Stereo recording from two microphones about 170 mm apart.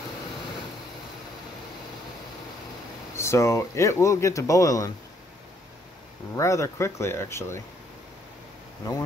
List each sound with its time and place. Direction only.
3.2 s speech: 15° left (ahead or behind)
6.3 s speech: 15° left (ahead or behind)